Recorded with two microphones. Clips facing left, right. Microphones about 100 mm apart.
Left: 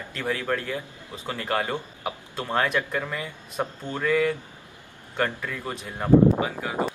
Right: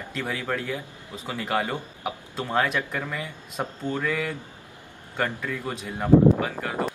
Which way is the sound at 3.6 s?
15° left (ahead or behind).